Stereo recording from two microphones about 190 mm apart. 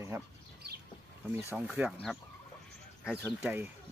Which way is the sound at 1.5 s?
5° right (ahead or behind).